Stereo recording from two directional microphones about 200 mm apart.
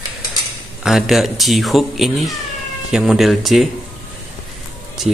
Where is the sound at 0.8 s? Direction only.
Centre (ahead or behind).